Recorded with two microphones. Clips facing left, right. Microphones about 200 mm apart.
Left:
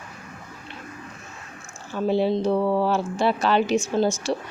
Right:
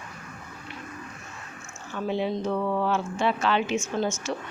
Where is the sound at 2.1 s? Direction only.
35° left (ahead or behind).